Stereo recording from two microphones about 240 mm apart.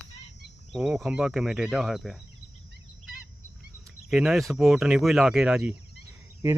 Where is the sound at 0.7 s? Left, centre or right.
Centre.